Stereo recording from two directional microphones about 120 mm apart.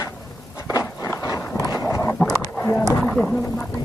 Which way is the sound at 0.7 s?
30° left (ahead or behind).